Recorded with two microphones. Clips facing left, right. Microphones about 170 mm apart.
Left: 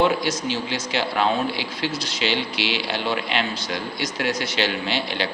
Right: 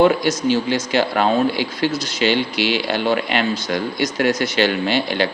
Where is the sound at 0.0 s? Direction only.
50° right (ahead or behind).